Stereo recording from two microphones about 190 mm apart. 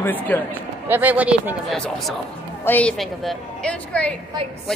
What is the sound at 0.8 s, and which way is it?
Speech, 10° right (ahead or behind).